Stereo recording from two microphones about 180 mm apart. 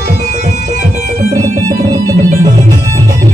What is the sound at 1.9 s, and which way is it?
Music, 20° right (ahead or behind).